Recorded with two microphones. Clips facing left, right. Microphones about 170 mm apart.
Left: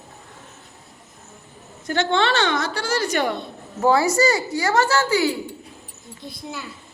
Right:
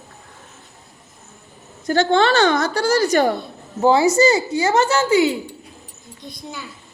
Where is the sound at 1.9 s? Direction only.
40° right (ahead or behind).